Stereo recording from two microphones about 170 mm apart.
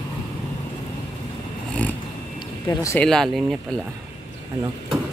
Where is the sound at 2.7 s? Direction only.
20° left (ahead or behind).